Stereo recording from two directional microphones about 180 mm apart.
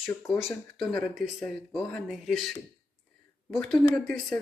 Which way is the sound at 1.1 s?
Centre (ahead or behind).